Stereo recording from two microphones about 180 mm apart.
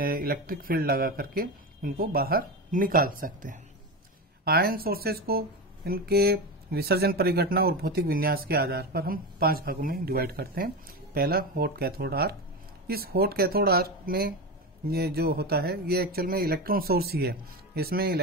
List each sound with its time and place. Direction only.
0.0 s speech: 55° right (ahead or behind)